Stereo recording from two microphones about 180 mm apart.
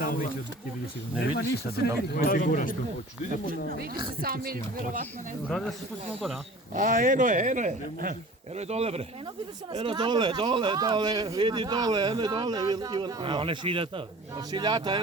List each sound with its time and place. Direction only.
0.0 s a sound: 50° left (ahead or behind)
1.4 s speech: 55° left (ahead or behind)
3.4 s speech: 55° right (ahead or behind)
5.5 s speech: centre (ahead or behind)
6.7 s speech: 45° right (ahead or behind); by 14.9 s 25° right (ahead or behind)